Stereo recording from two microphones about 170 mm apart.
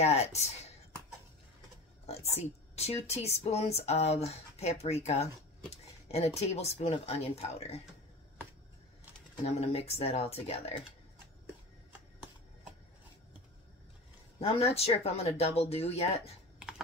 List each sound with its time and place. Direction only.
0.0 s speech: 40° left (ahead or behind)
2.3 s speech: 40° left (ahead or behind)
9.5 s speech: 40° left (ahead or behind)
14.4 s speech: 35° left (ahead or behind)
16.5 s computer keyboard: 5° right (ahead or behind)